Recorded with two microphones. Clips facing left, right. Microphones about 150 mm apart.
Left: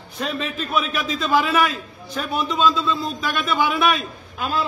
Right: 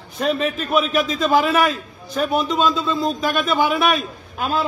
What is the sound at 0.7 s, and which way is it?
A man's voice, 45° right (ahead or behind).